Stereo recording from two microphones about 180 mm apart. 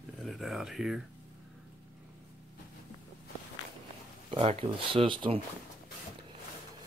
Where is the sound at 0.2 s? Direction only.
Centre (ahead or behind).